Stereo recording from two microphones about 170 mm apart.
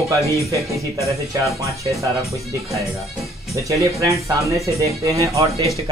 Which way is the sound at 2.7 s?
Centre (ahead or behind).